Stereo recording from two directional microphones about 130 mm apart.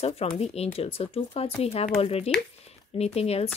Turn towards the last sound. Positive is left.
turn(degrees=50)  # may be behind; listen again after turning